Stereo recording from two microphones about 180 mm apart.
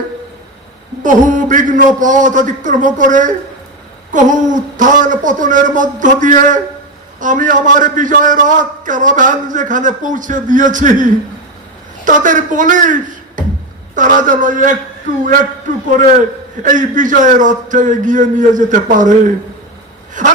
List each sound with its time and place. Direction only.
1.0 s a man's voice: 45° right (ahead or behind)
16.6 s a man's voice: 45° right (ahead or behind)
20.2 s a man's voice: 45° right (ahead or behind)